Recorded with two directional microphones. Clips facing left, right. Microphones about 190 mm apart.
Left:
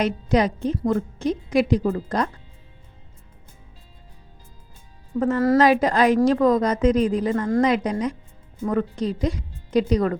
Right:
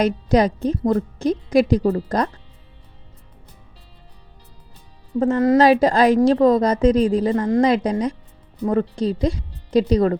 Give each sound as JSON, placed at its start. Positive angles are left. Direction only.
{"t": 0.0, "sound": "speech", "side_deg": -40}
{"t": 5.2, "sound": "speech", "side_deg": -25}